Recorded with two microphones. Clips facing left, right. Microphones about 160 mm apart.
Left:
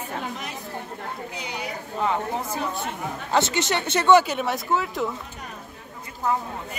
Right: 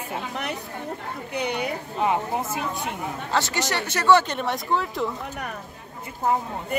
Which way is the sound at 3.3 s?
25° left (ahead or behind).